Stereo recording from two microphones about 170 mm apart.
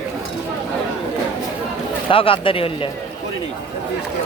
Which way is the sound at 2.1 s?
30° left (ahead or behind).